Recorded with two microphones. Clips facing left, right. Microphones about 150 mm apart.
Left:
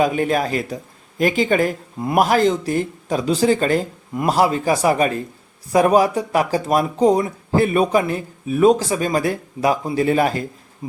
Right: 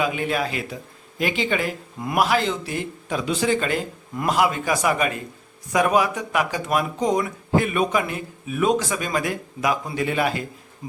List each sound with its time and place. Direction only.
0.0 s speech: 40° left (ahead or behind)